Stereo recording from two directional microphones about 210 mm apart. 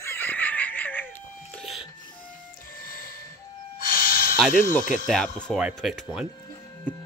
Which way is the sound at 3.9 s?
45° left (ahead or behind).